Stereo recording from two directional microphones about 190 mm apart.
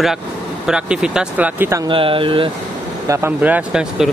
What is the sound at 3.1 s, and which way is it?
Speech, 10° right (ahead or behind).